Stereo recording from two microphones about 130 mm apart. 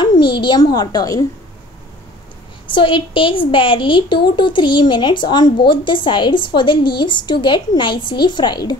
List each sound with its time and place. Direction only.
0.2 s a woman's voice: 35° left (ahead or behind)
2.7 s a woman's voice: 40° left (ahead or behind)